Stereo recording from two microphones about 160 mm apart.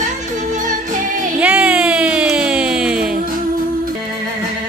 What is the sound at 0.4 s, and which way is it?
Music, 50° right (ahead or behind).